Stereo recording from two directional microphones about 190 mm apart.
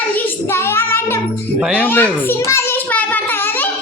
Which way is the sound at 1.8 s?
10° left (ahead or behind).